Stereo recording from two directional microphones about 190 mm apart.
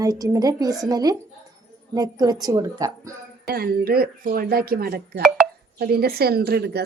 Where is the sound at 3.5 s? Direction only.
50° right (ahead or behind).